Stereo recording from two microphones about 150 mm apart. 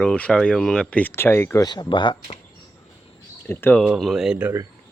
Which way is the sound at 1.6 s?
30° left (ahead or behind).